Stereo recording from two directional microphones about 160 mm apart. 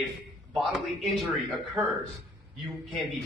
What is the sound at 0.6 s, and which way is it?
A man's voice, centre (ahead or behind).